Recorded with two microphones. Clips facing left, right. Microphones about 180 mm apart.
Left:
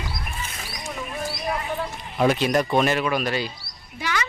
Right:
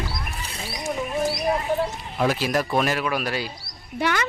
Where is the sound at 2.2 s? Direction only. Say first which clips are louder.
Left 3 dB; 5° right (ahead or behind).